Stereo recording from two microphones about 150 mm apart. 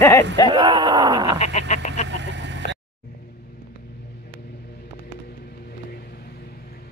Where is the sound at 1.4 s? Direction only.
50° left (ahead or behind).